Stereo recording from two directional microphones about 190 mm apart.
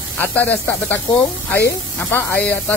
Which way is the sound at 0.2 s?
10° left (ahead or behind).